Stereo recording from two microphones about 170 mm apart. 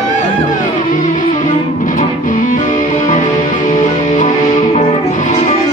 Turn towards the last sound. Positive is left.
turn(degrees=50)  # may be behind; listen again after turning